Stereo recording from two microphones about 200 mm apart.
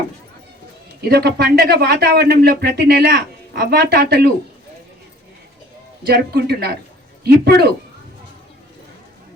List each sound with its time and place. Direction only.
1.0 s speech: 50° right (ahead or behind)
6.1 s speech: 50° right (ahead or behind)